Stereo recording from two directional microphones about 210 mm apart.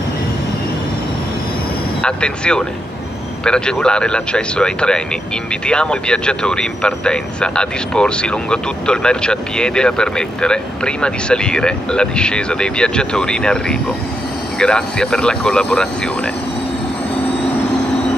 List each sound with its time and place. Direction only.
2.0 s speech: 5° left (ahead or behind)